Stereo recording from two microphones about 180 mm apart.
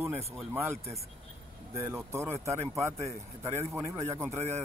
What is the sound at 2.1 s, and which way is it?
Speech, 15° right (ahead or behind).